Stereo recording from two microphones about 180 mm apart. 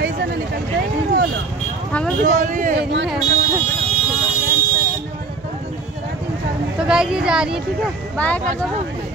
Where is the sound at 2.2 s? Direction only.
45° right (ahead or behind).